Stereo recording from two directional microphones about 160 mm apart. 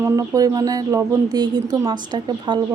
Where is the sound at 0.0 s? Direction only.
20° right (ahead or behind).